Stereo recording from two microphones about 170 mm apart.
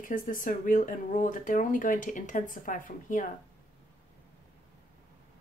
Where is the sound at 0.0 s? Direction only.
50° left (ahead or behind).